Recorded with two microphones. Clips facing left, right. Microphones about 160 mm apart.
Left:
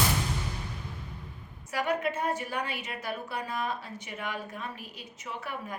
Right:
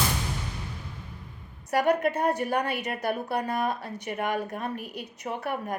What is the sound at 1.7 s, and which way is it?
A woman's voice, 60° right (ahead or behind).